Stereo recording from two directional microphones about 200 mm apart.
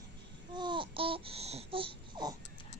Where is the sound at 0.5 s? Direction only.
25° right (ahead or behind).